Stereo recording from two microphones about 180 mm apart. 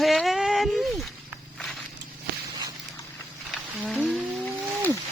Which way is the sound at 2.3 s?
55° right (ahead or behind).